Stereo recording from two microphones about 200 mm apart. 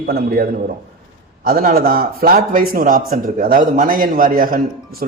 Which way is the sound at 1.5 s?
45° right (ahead or behind).